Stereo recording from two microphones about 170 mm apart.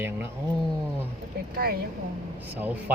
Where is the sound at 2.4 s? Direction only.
10° right (ahead or behind).